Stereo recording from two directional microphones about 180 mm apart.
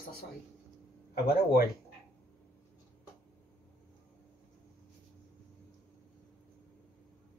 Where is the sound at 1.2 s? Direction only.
55° left (ahead or behind).